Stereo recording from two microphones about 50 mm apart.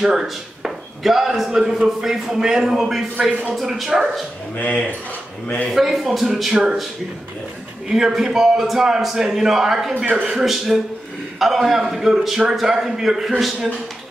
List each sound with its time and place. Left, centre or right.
0.0 s a man's voice: centre
4.6 s speech: left
5.7 s a man's voice: centre
7.9 s a man's voice: centre